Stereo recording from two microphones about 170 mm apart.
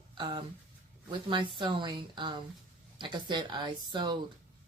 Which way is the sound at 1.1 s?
30° right (ahead or behind).